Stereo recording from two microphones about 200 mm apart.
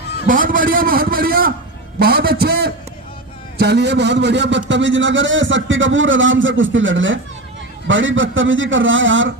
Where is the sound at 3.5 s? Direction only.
55° right (ahead or behind).